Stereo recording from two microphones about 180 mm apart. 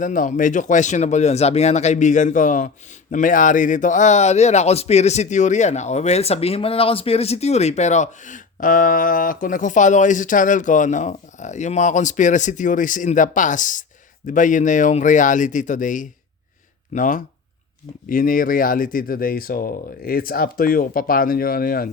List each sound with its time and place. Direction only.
0.0 s speech: 45° left (ahead or behind)